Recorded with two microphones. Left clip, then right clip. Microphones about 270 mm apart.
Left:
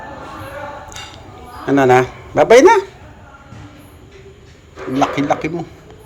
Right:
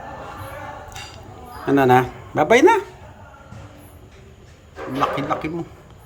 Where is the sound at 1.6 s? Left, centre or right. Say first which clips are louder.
Left 4 dB; centre.